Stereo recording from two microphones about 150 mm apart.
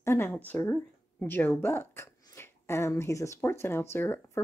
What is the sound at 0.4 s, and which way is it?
Speech, 10° left (ahead or behind).